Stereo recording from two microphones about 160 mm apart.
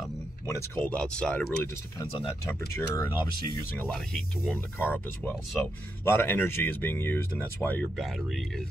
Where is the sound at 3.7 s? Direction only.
10° left (ahead or behind).